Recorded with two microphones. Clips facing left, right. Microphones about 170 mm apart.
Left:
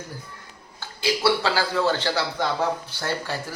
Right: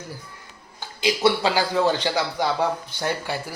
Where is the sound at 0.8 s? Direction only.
20° right (ahead or behind).